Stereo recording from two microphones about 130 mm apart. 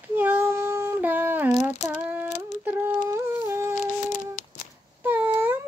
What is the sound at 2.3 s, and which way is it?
Humming, 70° left (ahead or behind).